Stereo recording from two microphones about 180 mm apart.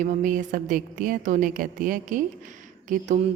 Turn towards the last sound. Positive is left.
turn(degrees=-45)  # may be behind; listen again after turning